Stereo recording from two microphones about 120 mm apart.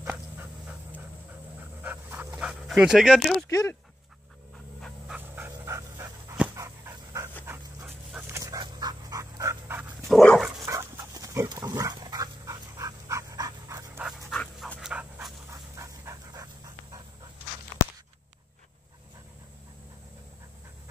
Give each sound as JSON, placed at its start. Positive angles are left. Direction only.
{"t": 0.0, "sound": "dog", "side_deg": -10}
{"t": 1.8, "sound": "dog", "side_deg": -15}
{"t": 3.4, "sound": "speech", "side_deg": 25}
{"t": 4.8, "sound": "dog", "side_deg": -5}
{"t": 5.3, "sound": "dog", "side_deg": -20}
{"t": 10.0, "sound": "dog", "side_deg": 0}
{"t": 10.6, "sound": "dog", "side_deg": -25}
{"t": 14.3, "sound": "dog", "side_deg": 10}
{"t": 14.8, "sound": "dog", "side_deg": -5}
{"t": 15.5, "sound": "dog", "side_deg": -25}